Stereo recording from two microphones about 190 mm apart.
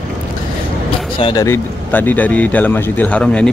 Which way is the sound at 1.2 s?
25° left (ahead or behind).